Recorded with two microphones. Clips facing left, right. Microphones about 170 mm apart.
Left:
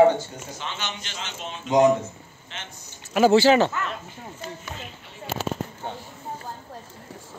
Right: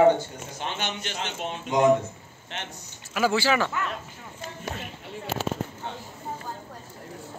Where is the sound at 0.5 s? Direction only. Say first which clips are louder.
Right 3 dB; 55° right (ahead or behind).